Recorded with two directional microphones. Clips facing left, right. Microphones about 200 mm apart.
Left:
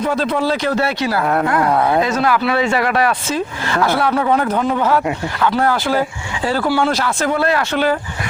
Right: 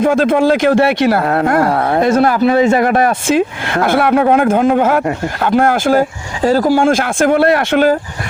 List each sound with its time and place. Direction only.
0.0 s speech: 50° right (ahead or behind)
0.8 s speech: 60° right (ahead or behind)